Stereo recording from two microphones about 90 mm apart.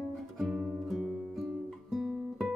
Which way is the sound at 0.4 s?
Centre (ahead or behind).